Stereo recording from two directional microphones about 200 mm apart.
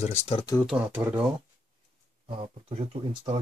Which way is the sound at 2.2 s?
30° right (ahead or behind).